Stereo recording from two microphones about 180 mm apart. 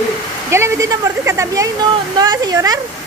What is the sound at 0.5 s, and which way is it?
Speech, 15° right (ahead or behind).